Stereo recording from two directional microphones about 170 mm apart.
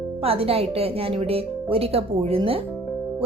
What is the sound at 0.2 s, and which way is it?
A woman's voice, 35° right (ahead or behind).